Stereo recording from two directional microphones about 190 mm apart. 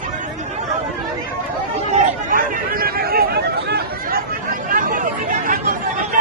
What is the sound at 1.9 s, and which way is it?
Chatter, 45° right (ahead or behind).